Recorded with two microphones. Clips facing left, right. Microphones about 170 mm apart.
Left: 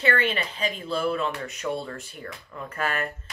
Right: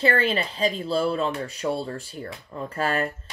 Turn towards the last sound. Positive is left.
turn(degrees=-30)  # may be behind; listen again after turning